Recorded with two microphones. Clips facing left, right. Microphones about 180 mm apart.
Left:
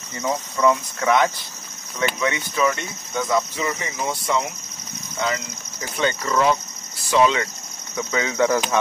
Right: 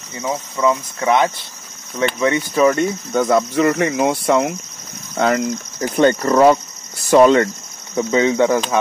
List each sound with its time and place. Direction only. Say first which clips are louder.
0.2 s speech: right 1 dB; 15° right (ahead or behind)
2.1 s speech: right 7 dB; 35° right (ahead or behind)
3.1 s speech: right 4 dB; 60° right (ahead or behind)
7.9 s speech: right 9 dB; 25° right (ahead or behind)